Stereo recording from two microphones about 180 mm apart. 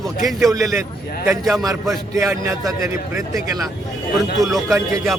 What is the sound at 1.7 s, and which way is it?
A man's voice, 20° right (ahead or behind).